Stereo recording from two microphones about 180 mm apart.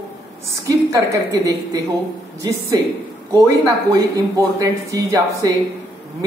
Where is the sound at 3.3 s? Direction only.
15° right (ahead or behind).